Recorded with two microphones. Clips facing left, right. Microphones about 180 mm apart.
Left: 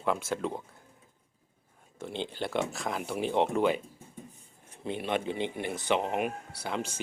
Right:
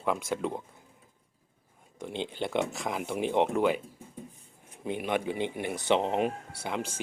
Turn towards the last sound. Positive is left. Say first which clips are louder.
# even
turn(degrees=-10)  # may be behind; listen again after turning